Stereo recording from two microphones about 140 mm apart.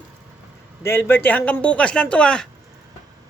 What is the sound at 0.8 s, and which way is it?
Speech, 15° left (ahead or behind).